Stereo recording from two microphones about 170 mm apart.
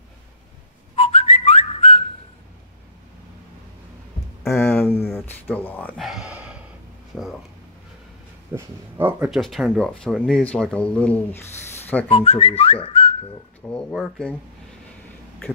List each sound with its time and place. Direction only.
0.9 s whistling: 40° left (ahead or behind)
4.4 s a sound: 15° left (ahead or behind)
6.0 s a sound: 5° right (ahead or behind)
7.1 s speech: 5° right (ahead or behind)
8.5 s speech: 15° right (ahead or behind)
9.3 s speech: centre (ahead or behind)
12.1 s whistling: 35° left (ahead or behind)
13.7 s speech: 5° left (ahead or behind)